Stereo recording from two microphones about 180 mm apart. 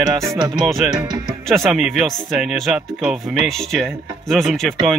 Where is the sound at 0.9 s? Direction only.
25° right (ahead or behind).